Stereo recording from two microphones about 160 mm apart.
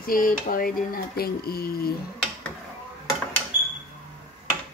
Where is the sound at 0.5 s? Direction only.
65° left (ahead or behind).